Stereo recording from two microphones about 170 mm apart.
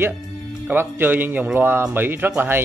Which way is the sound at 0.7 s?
10° right (ahead or behind).